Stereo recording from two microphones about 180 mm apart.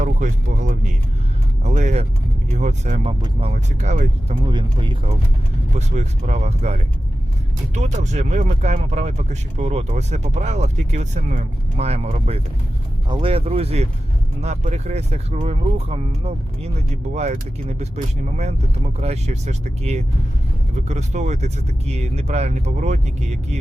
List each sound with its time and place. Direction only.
0.0 s speech: 45° right (ahead or behind)
4.4 s speech: 25° right (ahead or behind)
5.7 s speech: 40° right (ahead or behind)